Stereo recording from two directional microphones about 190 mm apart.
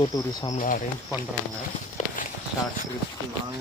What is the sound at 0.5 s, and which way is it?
Speech, 45° left (ahead or behind).